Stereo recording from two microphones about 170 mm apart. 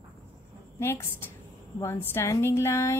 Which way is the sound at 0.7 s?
15° left (ahead or behind).